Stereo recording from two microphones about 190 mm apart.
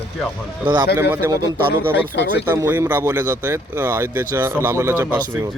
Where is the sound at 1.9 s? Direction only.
70° left (ahead or behind).